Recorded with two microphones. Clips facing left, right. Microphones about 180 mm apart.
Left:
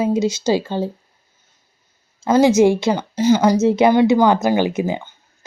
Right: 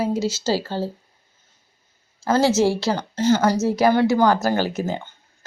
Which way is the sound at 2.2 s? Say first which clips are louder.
Left 5 dB; 15° left (ahead or behind).